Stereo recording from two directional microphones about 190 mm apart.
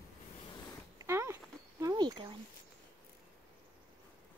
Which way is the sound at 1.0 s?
15° right (ahead or behind).